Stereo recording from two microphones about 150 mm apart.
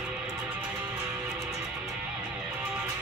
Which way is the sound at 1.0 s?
5° right (ahead or behind).